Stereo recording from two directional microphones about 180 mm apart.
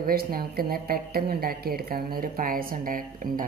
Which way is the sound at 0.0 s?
55° right (ahead or behind).